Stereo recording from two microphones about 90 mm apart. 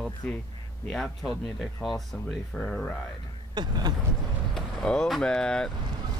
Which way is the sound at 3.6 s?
50° right (ahead or behind).